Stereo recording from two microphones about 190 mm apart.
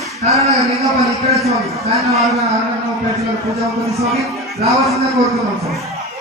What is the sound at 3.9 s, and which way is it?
Speech, centre (ahead or behind).